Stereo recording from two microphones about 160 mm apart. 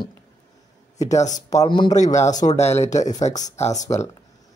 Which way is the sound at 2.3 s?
50° left (ahead or behind).